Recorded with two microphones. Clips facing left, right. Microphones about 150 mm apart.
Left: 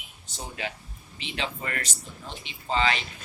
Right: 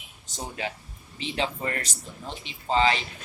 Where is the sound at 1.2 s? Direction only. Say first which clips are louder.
Right 4 dB; 30° right (ahead or behind).